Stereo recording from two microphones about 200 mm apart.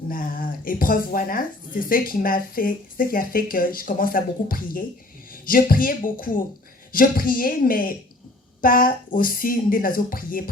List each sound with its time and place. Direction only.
0.1 s speech: 45° left (ahead or behind)